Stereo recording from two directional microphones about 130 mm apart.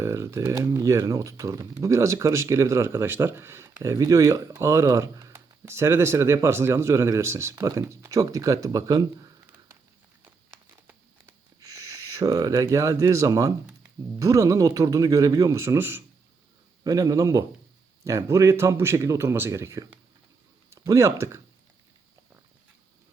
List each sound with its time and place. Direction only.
0.0 s speech: 20° right (ahead or behind)
10.8 s a sound: 25° right (ahead or behind)
14.2 s speech: 25° right (ahead or behind)
16.8 s speech: 25° right (ahead or behind)